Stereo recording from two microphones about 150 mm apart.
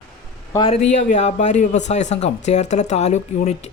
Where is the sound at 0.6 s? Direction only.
45° left (ahead or behind).